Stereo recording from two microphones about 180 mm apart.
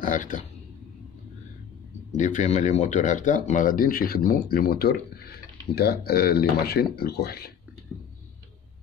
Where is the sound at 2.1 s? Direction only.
40° left (ahead or behind); by 7.5 s 60° left (ahead or behind).